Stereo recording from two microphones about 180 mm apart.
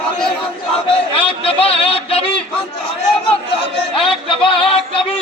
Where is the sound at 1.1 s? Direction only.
30° left (ahead or behind).